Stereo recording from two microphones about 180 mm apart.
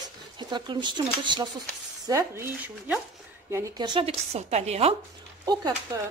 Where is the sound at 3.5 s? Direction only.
25° right (ahead or behind).